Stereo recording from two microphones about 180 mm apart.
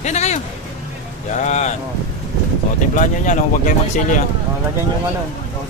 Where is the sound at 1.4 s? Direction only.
40° left (ahead or behind).